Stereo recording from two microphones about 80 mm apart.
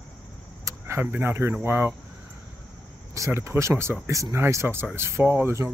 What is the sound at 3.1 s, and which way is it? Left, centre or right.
Speech, right.